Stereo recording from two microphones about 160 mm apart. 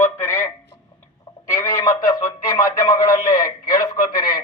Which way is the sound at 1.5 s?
20° left (ahead or behind).